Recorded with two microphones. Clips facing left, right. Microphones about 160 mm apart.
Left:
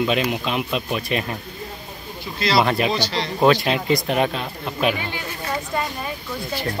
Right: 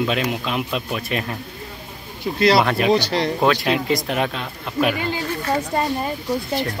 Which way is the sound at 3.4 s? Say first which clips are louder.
Left 5 dB; centre (ahead or behind).